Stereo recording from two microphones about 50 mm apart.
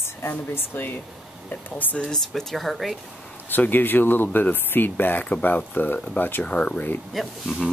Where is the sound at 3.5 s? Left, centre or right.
Left.